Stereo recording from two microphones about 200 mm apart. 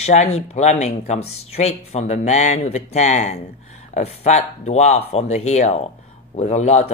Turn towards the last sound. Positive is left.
turn(degrees=35)  # may be behind; listen again after turning